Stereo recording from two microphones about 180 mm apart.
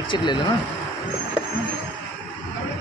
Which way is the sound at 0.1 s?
25° left (ahead or behind).